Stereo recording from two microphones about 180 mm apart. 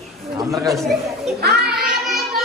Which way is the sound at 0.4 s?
20° right (ahead or behind).